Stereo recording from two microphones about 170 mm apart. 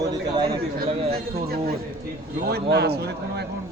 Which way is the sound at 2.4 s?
70° right (ahead or behind).